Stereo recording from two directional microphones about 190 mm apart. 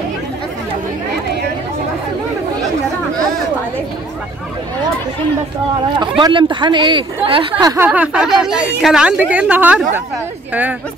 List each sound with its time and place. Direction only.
5.9 s speech: 25° right (ahead or behind)
7.6 s speech: 15° right (ahead or behind)